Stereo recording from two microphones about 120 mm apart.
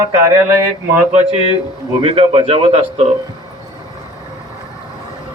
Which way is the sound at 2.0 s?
50° right (ahead or behind).